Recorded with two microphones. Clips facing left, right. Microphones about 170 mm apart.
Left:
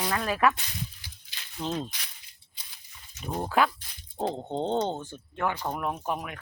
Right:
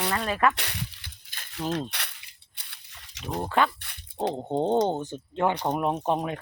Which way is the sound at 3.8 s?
65° right (ahead or behind).